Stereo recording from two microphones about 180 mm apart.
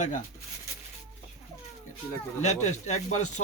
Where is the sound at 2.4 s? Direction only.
40° left (ahead or behind).